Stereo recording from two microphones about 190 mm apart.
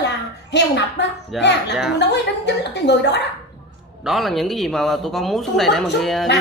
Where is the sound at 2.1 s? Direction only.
65° left (ahead or behind).